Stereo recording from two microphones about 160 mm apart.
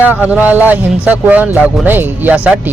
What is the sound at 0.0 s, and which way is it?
A man's voice, 10° right (ahead or behind).